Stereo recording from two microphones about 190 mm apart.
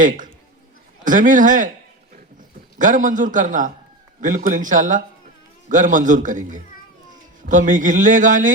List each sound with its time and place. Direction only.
1.0 s a man's voice: 45° right (ahead or behind)
2.7 s a man's voice: 45° right (ahead or behind)